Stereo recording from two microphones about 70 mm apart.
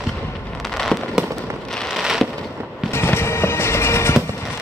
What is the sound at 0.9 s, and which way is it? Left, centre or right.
Fireworks, centre.